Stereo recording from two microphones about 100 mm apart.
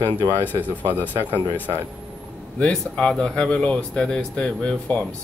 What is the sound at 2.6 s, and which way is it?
Speech, 10° left (ahead or behind).